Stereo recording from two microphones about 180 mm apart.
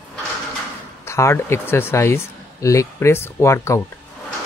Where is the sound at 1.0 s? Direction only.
15° left (ahead or behind).